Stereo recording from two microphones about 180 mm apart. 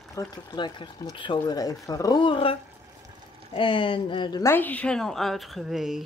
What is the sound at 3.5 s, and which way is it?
Speech, 25° left (ahead or behind).